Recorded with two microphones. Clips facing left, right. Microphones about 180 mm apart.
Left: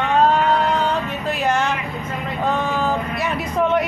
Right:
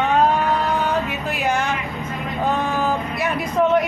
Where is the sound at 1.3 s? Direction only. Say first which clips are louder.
Left 2 dB; 5° right (ahead or behind).